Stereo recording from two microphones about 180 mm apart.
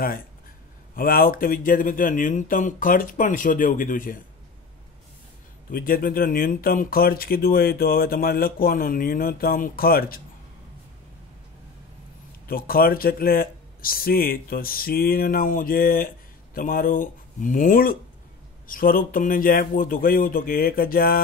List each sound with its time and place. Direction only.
0.9 s speech: 50° left (ahead or behind)
5.7 s speech: 50° left (ahead or behind)
12.4 s speech: 55° left (ahead or behind)